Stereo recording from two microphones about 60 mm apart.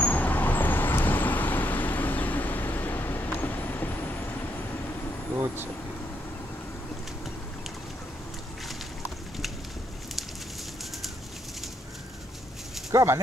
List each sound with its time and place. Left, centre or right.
0.0 s vehicle: left
12.9 s speech: right